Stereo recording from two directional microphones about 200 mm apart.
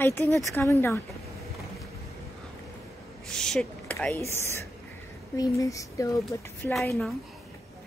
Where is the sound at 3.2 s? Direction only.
5° left (ahead or behind).